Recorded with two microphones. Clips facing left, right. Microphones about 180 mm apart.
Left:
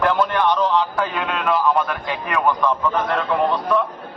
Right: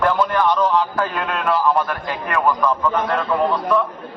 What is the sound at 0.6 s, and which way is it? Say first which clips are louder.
A man's voice: right 1 dB; centre (ahead or behind).